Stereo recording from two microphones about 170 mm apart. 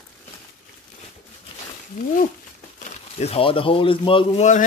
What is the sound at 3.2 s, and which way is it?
Speech, 35° left (ahead or behind).